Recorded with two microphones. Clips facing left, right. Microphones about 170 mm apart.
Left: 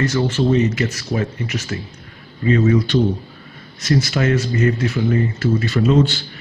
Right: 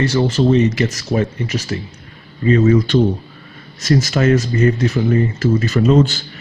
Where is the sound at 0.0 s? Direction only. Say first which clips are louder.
Right 3 dB; 30° right (ahead or behind).